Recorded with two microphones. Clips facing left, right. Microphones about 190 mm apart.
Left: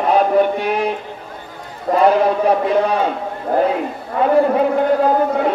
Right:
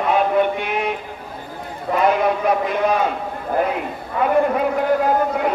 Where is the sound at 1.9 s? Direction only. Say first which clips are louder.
Left 4 dB; 30° left (ahead or behind).